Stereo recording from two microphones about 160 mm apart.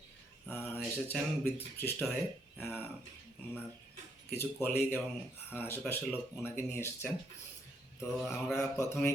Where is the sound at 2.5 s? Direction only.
15° left (ahead or behind).